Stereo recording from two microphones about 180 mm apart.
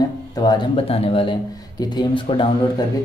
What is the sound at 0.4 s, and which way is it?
Speech, 25° left (ahead or behind).